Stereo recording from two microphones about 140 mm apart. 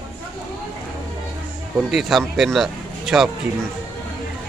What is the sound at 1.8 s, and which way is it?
Speech, centre (ahead or behind).